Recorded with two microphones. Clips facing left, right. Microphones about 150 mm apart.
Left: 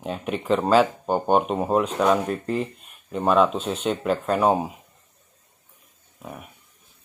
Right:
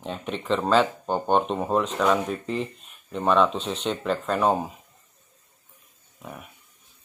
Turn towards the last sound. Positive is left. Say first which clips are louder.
# left 2 dB
turn(degrees=5)  # may be behind; listen again after turning